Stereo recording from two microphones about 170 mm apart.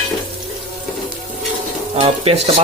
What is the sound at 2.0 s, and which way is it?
Speech, 30° right (ahead or behind).